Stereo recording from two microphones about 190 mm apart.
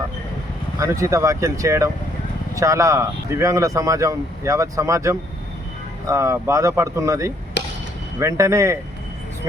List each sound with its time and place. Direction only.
0.8 s speech: 15° right (ahead or behind)